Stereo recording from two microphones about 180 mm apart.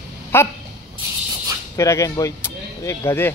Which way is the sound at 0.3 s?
15° left (ahead or behind).